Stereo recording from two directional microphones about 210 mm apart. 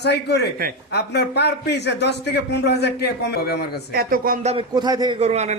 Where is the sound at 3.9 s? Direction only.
45° right (ahead or behind).